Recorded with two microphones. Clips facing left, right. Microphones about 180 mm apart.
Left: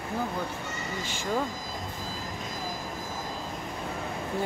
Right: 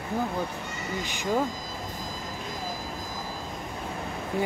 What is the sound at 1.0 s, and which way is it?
Speech, 15° right (ahead or behind).